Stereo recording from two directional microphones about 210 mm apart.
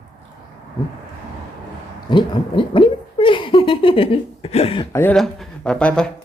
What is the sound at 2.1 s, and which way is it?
Speech, 20° left (ahead or behind).